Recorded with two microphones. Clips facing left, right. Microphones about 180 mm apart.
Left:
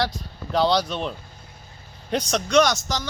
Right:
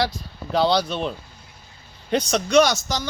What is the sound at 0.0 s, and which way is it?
Speech, 5° right (ahead or behind).